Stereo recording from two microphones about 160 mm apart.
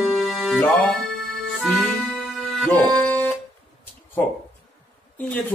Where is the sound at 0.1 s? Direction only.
Centre (ahead or behind).